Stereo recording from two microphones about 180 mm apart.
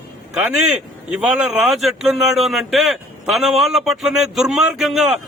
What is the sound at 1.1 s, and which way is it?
A man's voice, 5° right (ahead or behind).